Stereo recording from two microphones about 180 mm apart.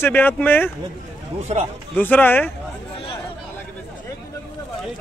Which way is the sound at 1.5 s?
35° right (ahead or behind).